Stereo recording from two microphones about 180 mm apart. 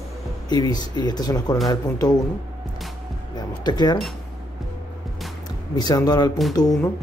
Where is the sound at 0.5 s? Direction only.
20° left (ahead or behind).